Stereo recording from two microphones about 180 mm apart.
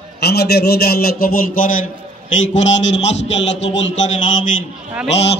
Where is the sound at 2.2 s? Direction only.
90° left.